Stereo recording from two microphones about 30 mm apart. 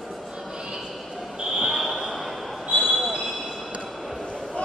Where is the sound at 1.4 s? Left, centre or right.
Centre.